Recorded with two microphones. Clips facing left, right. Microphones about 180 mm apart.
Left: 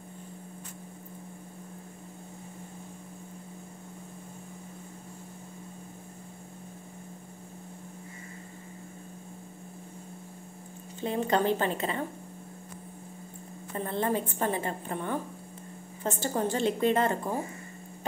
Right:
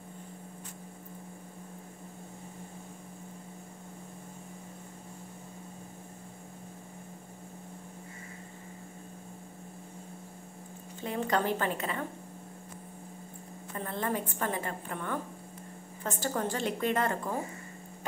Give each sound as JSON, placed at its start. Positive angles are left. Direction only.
{"t": 11.0, "sound": "a woman's voice", "side_deg": 25}
{"t": 13.7, "sound": "a woman's voice", "side_deg": 25}